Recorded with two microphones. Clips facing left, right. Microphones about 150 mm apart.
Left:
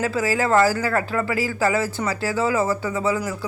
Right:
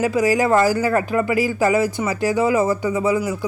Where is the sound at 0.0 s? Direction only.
15° right (ahead or behind).